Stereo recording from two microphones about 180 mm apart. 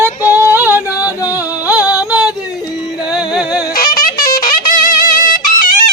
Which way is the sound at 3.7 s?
50° left (ahead or behind).